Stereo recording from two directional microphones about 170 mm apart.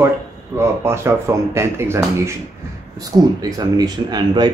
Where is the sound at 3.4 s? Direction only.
20° right (ahead or behind).